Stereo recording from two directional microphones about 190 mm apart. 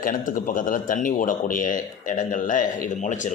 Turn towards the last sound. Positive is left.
turn(degrees=40)  # may be behind; listen again after turning